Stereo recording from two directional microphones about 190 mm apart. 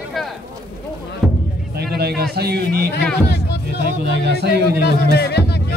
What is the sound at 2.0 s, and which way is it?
Speech, 55° right (ahead or behind).